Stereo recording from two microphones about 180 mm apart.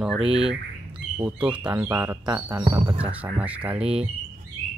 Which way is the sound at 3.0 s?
10° right (ahead or behind).